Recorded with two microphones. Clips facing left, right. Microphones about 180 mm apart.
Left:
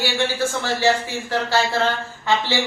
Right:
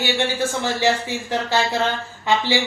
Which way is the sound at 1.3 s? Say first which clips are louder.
Left 1 dB; 15° right (ahead or behind).